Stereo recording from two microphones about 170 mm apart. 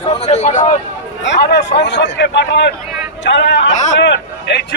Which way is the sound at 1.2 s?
85° left.